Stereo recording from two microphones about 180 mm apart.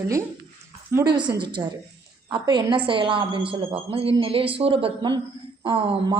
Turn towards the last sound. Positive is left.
turn(degrees=-30)  # may be behind; listen again after turning